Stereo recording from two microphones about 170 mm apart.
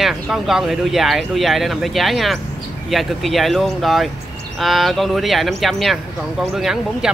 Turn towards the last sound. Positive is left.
turn(degrees=0)  # may be behind; listen again after turning